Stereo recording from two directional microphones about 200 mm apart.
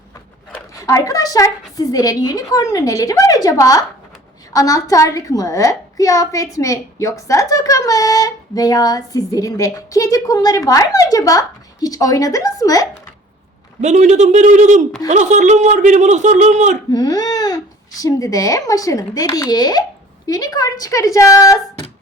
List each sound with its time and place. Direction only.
0.8 s a woman's voice: 15° left (ahead or behind)
13.8 s speech: 35° right (ahead or behind)
16.9 s a woman's voice: 20° left (ahead or behind)